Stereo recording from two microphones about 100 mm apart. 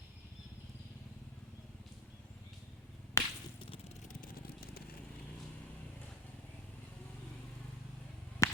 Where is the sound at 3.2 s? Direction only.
30° left (ahead or behind).